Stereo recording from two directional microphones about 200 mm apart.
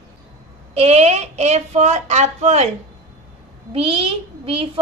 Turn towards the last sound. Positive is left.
turn(degrees=-25)  # may be behind; listen again after turning